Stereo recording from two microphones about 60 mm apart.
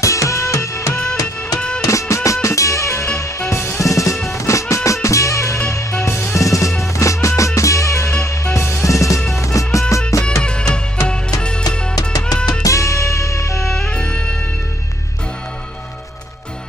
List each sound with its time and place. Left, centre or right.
0.0 s music: left
3.8 s music: left
6.3 s music: left
10.2 s music: centre
12.6 s music: left
13.7 s music: centre